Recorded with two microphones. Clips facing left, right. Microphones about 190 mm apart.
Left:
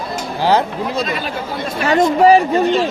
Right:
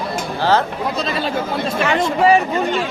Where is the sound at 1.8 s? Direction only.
40° left (ahead or behind).